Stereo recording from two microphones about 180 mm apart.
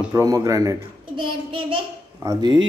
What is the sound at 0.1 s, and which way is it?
A man's voice, 20° right (ahead or behind).